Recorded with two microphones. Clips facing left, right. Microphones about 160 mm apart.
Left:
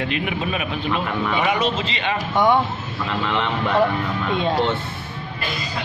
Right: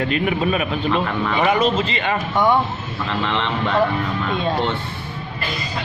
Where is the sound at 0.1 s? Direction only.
45° right (ahead or behind).